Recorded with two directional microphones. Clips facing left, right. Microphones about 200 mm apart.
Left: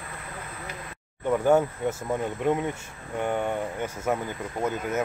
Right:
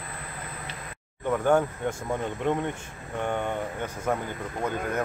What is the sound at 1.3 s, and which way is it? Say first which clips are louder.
Speech: left 2 dB; 10° left (ahead or behind).